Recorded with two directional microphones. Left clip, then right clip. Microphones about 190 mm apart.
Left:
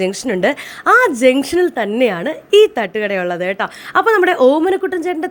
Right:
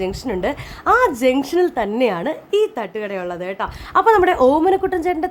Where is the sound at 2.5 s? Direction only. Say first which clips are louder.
Left 9 dB; 15° left (ahead or behind); by 5.3 s centre (ahead or behind).